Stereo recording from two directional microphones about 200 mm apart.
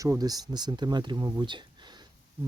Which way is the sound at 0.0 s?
15° right (ahead or behind).